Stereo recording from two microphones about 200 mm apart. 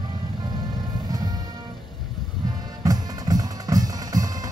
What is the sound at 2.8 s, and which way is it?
Music, 20° right (ahead or behind).